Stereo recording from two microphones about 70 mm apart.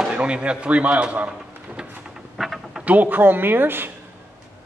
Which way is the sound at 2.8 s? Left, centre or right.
Right.